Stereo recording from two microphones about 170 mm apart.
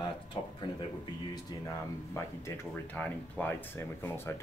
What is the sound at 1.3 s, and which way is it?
Speech, 25° left (ahead or behind).